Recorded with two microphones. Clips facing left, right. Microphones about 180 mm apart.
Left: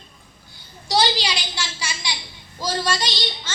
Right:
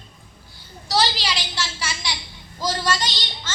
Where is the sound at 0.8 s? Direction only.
15° left (ahead or behind).